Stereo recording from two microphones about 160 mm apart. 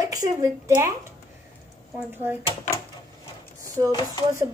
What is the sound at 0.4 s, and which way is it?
Speech, 20° right (ahead or behind).